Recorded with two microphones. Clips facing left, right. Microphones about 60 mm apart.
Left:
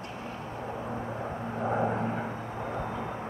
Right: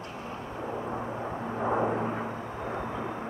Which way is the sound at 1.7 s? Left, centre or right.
Centre.